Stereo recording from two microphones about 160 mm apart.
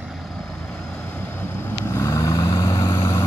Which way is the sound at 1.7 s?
15° left (ahead or behind).